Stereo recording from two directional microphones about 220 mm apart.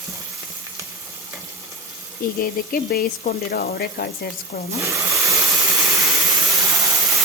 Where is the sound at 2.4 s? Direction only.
45° left (ahead or behind).